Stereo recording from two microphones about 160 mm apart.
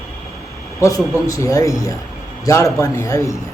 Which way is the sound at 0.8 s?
20° left (ahead or behind).